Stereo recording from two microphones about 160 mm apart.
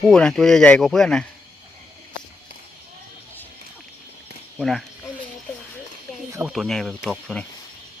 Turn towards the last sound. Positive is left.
turn(degrees=5)  # may be behind; listen again after turning